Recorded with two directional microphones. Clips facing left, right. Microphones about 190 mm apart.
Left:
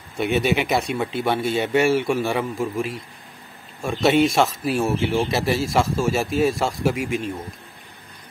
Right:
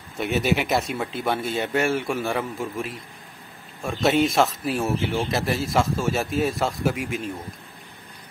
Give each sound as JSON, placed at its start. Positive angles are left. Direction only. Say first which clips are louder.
{"t": 0.2, "sound": "speech", "louder": "left 2 dB", "side_deg": 0}